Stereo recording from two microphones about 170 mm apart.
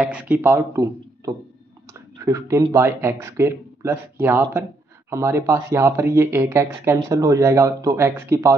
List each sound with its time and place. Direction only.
0.0 s speech: 10° right (ahead or behind)